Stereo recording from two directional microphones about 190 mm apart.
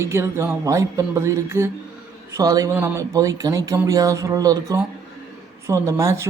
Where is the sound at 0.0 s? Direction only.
15° right (ahead or behind).